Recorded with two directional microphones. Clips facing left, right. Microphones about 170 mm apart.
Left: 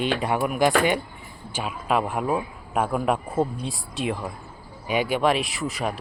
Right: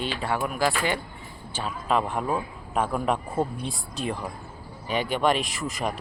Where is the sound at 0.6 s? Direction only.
20° left (ahead or behind).